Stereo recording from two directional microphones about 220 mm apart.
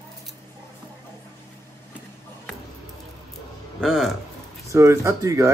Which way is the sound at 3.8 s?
Centre (ahead or behind).